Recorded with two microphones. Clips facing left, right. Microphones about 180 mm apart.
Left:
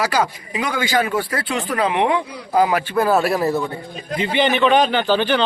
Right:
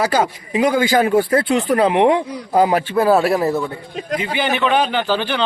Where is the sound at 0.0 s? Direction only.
30° right (ahead or behind).